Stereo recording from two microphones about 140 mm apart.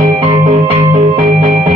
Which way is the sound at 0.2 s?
40° right (ahead or behind).